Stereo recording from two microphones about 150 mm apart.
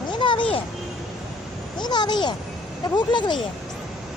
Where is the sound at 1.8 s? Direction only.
30° left (ahead or behind).